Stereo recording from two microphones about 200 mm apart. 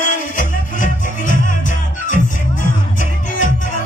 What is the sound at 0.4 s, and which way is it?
Music, 40° left (ahead or behind).